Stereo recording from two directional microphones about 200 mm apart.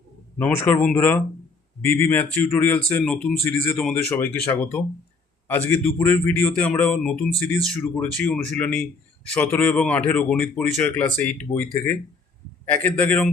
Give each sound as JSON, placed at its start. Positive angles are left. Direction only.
{"t": 0.3, "sound": "a man's voice", "side_deg": 10}
{"t": 12.7, "sound": "a man's voice", "side_deg": 5}